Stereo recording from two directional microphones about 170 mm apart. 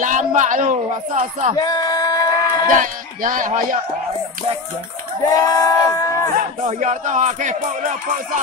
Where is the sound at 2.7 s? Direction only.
50° right (ahead or behind).